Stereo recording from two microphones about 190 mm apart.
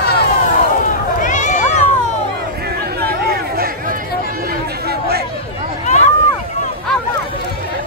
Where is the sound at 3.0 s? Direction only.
55° right (ahead or behind).